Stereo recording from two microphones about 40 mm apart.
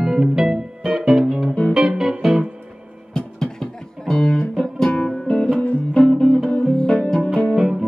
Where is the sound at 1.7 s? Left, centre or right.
Centre.